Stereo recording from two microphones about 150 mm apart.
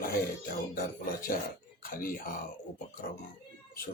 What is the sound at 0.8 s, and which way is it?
A man's voice, 75° left (ahead or behind).